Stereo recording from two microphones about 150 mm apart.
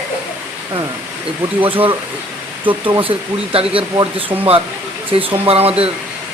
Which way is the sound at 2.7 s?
35° right (ahead or behind).